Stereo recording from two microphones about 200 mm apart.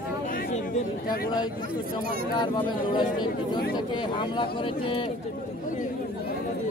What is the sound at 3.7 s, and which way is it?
Speech, 25° left (ahead or behind).